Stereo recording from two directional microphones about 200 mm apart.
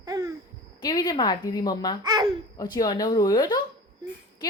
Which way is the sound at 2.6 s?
20° left (ahead or behind).